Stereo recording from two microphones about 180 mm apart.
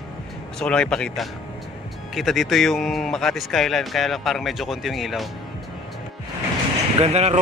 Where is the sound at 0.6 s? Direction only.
5° left (ahead or behind).